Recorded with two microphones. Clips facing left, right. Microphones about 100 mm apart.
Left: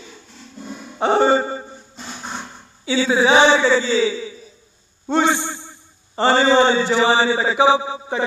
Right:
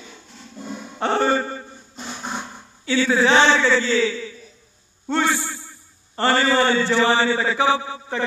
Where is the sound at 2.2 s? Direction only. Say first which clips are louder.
Right 2 dB; 10° right (ahead or behind).